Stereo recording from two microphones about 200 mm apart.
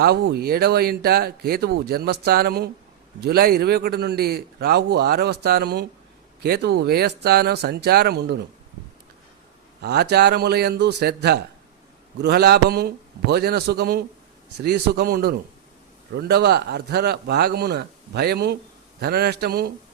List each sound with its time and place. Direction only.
0.0 s speech: 55° right (ahead or behind)
9.8 s speech: 55° right (ahead or behind)